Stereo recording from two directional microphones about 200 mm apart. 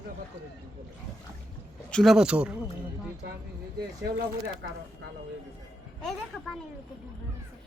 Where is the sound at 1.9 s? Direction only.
Centre (ahead or behind).